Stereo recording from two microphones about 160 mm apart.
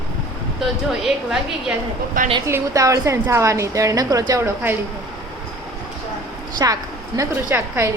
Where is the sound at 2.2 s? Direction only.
60° right (ahead or behind).